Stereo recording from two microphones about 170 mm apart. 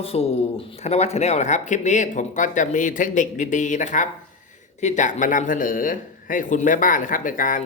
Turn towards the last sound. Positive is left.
turn(degrees=50)  # may be behind; listen again after turning